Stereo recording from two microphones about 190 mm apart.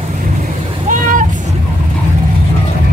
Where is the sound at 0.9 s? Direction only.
40° right (ahead or behind).